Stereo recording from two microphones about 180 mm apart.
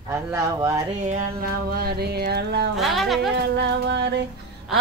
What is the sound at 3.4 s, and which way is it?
Female singing, 70° right (ahead or behind).